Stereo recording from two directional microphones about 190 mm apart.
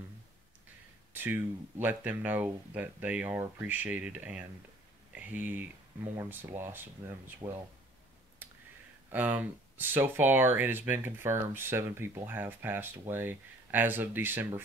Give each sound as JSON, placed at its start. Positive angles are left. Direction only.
{"t": 1.1, "sound": "speech", "side_deg": -10}
{"t": 8.4, "sound": "a sound", "side_deg": -10}
{"t": 9.1, "sound": "speech", "side_deg": -10}